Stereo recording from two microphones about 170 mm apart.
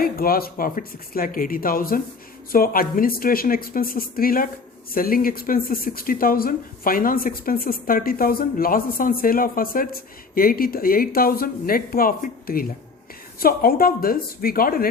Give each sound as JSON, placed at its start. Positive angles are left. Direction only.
{"t": 0.0, "sound": "speech", "side_deg": 60}